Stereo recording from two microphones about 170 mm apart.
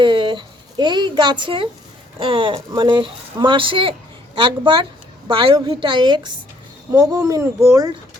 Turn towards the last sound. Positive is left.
turn(degrees=-20)  # may be behind; listen again after turning